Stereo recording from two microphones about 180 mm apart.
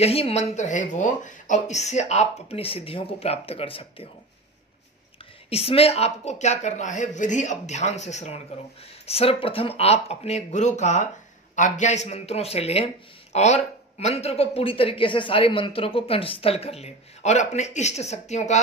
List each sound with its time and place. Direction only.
0.0 s speech: 35° left (ahead or behind)
5.5 s speech: 35° left (ahead or behind)